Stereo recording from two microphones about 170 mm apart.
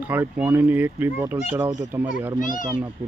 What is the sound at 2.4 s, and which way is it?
Speech, 50° left (ahead or behind).